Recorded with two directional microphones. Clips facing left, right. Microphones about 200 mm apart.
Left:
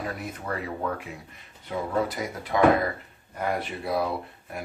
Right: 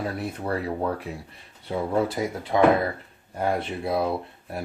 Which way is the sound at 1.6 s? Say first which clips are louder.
Right 3 dB; 25° right (ahead or behind).